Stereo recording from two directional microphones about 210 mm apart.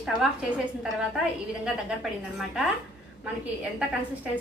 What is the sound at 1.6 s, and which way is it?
A woman's voice, centre (ahead or behind).